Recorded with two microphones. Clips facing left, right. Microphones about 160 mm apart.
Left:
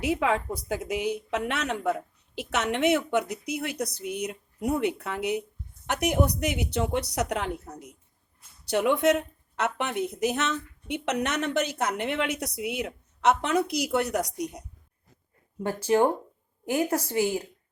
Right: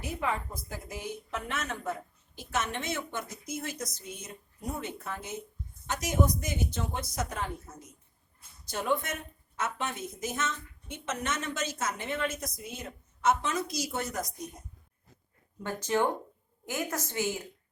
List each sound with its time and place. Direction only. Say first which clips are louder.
0.0 s a woman's voice: left 8 dB; 80° left
15.6 s a woman's voice: left 6 dB; 30° left (ahead or behind)